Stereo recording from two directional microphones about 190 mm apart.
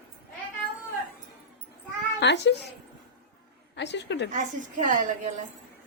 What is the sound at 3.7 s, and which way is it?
Speech, 65° left (ahead or behind).